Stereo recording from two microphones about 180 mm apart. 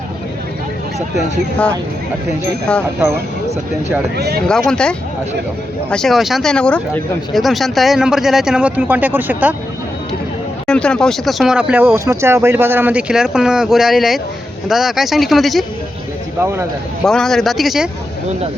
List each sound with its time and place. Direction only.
1.1 s speech: 5° left (ahead or behind)
4.2 s speech: 65° right (ahead or behind)
4.4 s speech: 5° left (ahead or behind)
10.7 s speech: 5° left (ahead or behind)
16.4 s speech: 15° right (ahead or behind)
17.0 s speech: 5° left (ahead or behind)